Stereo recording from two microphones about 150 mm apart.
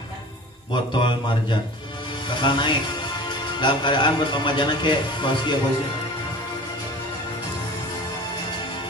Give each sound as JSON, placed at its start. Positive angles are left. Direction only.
{"t": 0.9, "sound": "mantra", "side_deg": 30}
{"t": 2.2, "sound": "speech", "side_deg": 30}